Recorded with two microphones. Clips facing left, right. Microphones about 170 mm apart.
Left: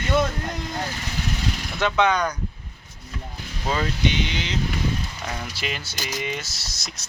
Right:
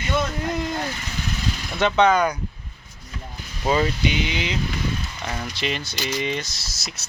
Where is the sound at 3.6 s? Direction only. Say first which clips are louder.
Right 3 dB; 10° right (ahead or behind).